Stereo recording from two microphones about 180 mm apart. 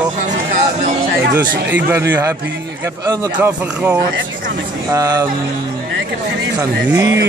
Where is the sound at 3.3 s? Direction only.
10° right (ahead or behind).